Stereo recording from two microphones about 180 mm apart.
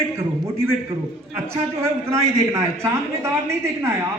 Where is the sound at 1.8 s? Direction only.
15° right (ahead or behind).